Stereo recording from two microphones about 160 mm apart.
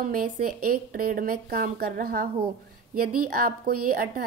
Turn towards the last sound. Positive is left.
turn(degrees=-65)  # may be behind; listen again after turning